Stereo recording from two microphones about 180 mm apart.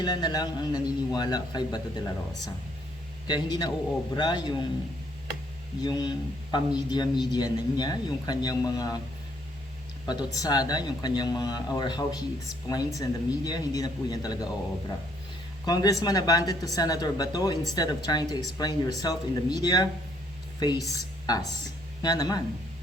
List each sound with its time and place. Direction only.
0.0 s a man's voice: 25° left (ahead or behind)
3.2 s a man's voice: 25° left (ahead or behind)
5.8 s a man's voice: 25° left (ahead or behind)
10.1 s a man's voice: 20° left (ahead or behind)